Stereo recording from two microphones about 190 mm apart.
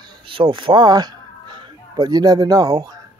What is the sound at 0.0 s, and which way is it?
Speech, 25° right (ahead or behind).